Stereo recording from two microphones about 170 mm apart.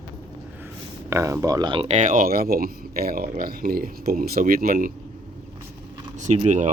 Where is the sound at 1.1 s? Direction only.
20° right (ahead or behind); by 4.9 s 55° right (ahead or behind).